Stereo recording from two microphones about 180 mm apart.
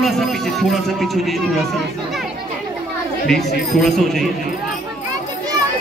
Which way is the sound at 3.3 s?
Centre (ahead or behind).